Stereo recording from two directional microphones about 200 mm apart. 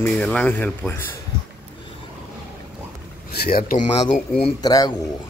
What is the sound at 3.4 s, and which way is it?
Speech, 45° left (ahead or behind).